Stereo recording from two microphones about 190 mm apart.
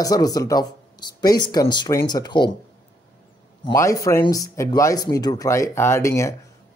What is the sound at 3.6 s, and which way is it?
Speech, 15° left (ahead or behind).